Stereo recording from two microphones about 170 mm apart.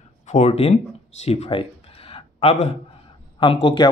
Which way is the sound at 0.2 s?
40° left (ahead or behind).